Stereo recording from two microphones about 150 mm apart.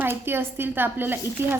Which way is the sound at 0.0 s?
15° right (ahead or behind).